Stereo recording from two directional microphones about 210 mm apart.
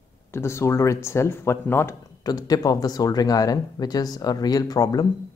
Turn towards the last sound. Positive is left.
turn(degrees=20)  # may be behind; listen again after turning